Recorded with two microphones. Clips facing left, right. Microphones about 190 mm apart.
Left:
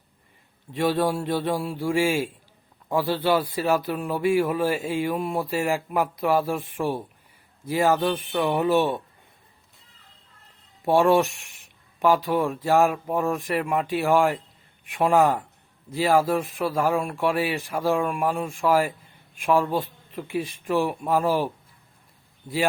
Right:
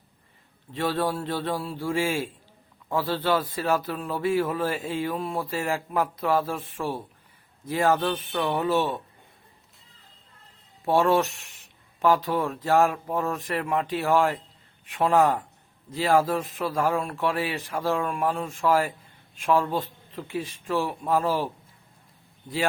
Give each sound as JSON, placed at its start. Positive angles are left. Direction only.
{"t": 0.7, "sound": "a man's voice", "side_deg": 15}
{"t": 10.8, "sound": "a man's voice", "side_deg": 15}